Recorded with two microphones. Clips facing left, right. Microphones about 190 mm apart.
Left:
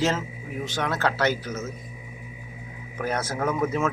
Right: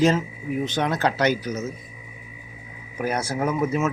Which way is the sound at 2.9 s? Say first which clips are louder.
Right 2 dB; 10° right (ahead or behind).